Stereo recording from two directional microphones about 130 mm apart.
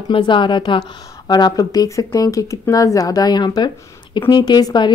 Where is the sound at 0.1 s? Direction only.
40° left (ahead or behind).